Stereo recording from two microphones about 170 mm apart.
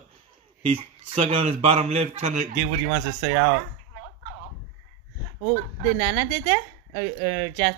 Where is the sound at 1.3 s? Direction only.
35° right (ahead or behind).